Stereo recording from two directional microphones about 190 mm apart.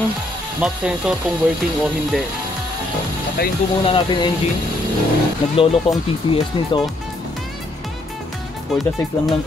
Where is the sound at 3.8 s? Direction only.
25° left (ahead or behind).